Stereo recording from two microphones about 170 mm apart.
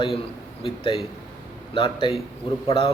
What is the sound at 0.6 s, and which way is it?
Speech, 30° left (ahead or behind).